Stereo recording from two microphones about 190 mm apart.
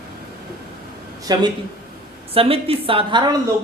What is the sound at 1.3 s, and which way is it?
A woman's voice, 20° right (ahead or behind).